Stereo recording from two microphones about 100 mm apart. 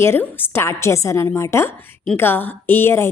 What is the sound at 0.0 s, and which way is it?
A woman's voice, 20° left (ahead or behind).